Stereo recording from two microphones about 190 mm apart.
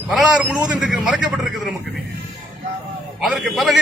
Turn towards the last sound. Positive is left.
turn(degrees=0)  # may be behind; listen again after turning